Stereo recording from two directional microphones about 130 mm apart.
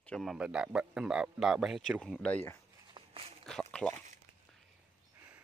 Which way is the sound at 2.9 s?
45° right (ahead or behind).